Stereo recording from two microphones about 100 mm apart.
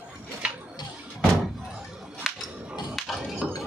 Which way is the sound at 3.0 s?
Centre (ahead or behind).